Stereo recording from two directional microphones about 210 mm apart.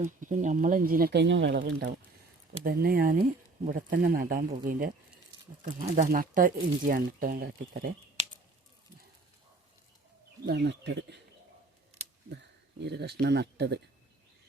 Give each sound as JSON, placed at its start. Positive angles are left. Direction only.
{"t": 0.0, "sound": "speech", "side_deg": -35}
{"t": 1.5, "sound": "speech", "side_deg": -45}
{"t": 10.4, "sound": "speech", "side_deg": -55}
{"t": 12.3, "sound": "speech", "side_deg": -55}